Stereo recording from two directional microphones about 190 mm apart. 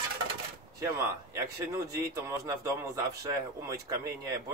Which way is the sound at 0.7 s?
15° right (ahead or behind).